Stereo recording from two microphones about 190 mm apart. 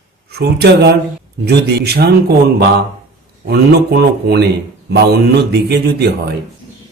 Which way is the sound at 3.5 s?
60° right (ahead or behind).